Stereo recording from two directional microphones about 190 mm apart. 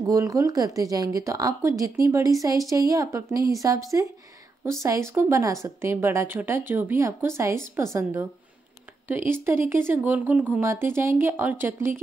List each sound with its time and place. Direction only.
0.1 s speech: 15° right (ahead or behind)
9.3 s speech: 10° right (ahead or behind)